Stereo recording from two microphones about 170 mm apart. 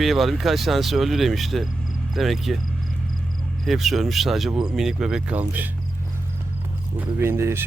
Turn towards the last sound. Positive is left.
turn(degrees=-15)  # may be behind; listen again after turning